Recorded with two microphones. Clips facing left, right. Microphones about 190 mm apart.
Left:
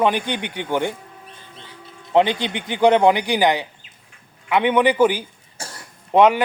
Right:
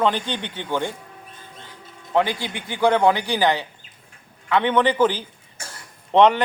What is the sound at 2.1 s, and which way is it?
A man's voice, 20° left (ahead or behind).